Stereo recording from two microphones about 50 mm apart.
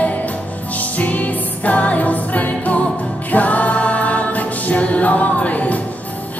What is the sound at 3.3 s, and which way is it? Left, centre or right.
Choir, left.